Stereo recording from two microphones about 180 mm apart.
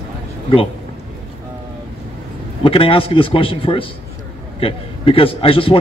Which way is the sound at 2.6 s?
30° left (ahead or behind).